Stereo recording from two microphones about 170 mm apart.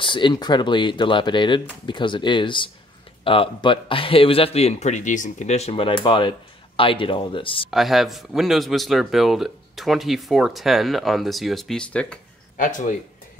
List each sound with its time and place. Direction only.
0.0 s a man's voice: 30° left (ahead or behind)
7.7 s a man's voice: centre (ahead or behind)
12.5 s speech: 50° left (ahead or behind)